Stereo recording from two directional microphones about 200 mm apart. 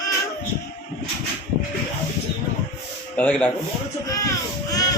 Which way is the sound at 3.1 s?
5° left (ahead or behind).